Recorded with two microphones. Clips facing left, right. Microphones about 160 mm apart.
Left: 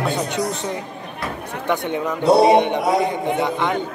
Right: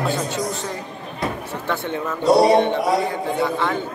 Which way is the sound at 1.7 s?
15° left (ahead or behind).